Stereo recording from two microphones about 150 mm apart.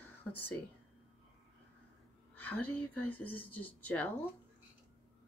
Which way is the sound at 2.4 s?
10° left (ahead or behind).